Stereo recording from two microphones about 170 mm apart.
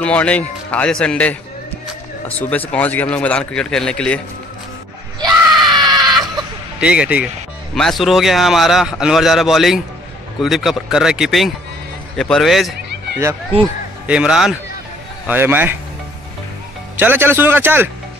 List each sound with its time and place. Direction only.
0.0 s speech: 5° left (ahead or behind)
5.2 s screaming: 25° right (ahead or behind)
6.3 s chicken: 5° right (ahead or behind)
7.7 s a man's voice: centre (ahead or behind)
14.0 s a man's voice: 5° right (ahead or behind)
17.0 s speech: 10° right (ahead or behind)